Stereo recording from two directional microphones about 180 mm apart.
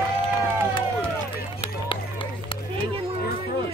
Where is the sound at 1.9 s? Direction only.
30° left (ahead or behind).